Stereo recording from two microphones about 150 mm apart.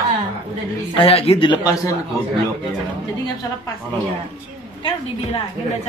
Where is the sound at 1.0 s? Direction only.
40° left (ahead or behind); by 1.9 s 25° left (ahead or behind).